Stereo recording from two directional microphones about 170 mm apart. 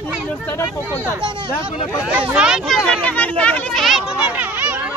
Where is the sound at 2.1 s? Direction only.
5° right (ahead or behind).